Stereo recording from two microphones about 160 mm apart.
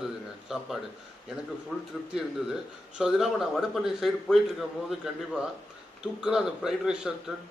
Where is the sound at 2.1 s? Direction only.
5° right (ahead or behind).